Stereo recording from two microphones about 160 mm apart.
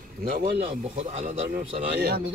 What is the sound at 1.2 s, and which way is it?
Speech, 35° right (ahead or behind).